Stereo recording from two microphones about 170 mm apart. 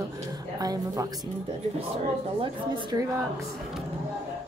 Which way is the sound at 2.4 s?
30° right (ahead or behind).